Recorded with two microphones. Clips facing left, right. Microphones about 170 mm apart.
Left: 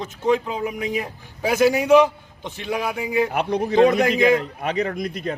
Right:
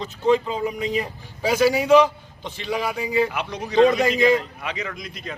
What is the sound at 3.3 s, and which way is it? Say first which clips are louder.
A man's voice: left 7 dB; 50° left (ahead or behind).